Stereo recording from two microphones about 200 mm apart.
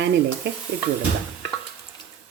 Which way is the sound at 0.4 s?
60° right (ahead or behind).